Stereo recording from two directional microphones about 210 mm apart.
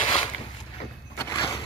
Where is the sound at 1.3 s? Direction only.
15° left (ahead or behind).